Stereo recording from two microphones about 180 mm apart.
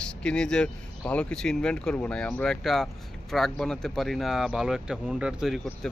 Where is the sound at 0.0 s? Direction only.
5° left (ahead or behind).